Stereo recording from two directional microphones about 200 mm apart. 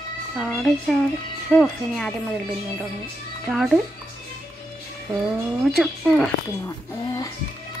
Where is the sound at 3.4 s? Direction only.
Centre (ahead or behind).